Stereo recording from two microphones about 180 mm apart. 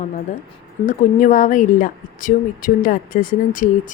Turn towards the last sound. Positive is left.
turn(degrees=50)  # may be behind; listen again after turning